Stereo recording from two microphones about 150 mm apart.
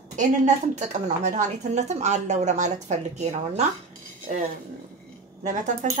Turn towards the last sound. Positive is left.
turn(degrees=-50)  # may be behind; listen again after turning